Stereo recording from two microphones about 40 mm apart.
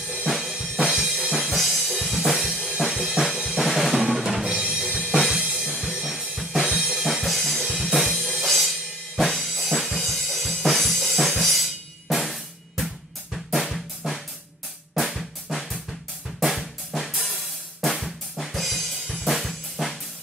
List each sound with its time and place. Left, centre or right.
0.3 s drum: centre
0.6 s music: centre
0.9 s drum kit: centre
1.5 s music: centre
4.5 s drum: centre
5.3 s drum kit: centre
8.5 s music: centre
9.3 s drum kit: centre
13.7 s drum: centre
15.0 s drum kit: centre